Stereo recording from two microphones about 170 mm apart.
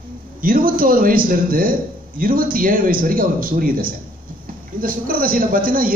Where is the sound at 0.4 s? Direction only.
55° right (ahead or behind).